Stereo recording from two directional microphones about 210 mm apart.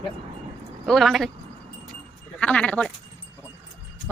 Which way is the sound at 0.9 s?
Centre (ahead or behind).